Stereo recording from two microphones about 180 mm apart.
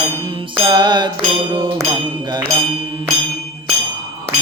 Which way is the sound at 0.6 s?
25° right (ahead or behind).